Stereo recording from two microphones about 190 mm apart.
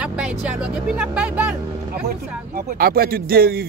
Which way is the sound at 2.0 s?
50° right (ahead or behind).